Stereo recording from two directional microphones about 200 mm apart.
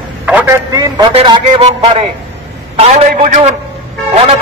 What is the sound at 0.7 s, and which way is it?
A man's voice, 20° right (ahead or behind).